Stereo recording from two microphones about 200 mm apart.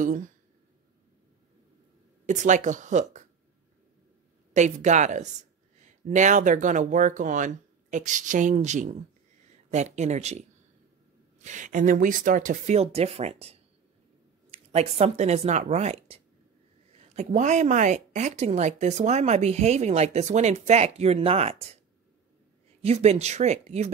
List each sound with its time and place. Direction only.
2.2 s speech: 40° right (ahead or behind)
4.6 s speech: 35° right (ahead or behind)
11.4 s speech: 40° right (ahead or behind)
22.8 s speech: 35° right (ahead or behind)